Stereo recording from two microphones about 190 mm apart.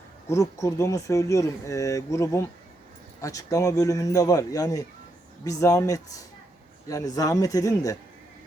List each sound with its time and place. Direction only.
0.3 s speech: 15° left (ahead or behind)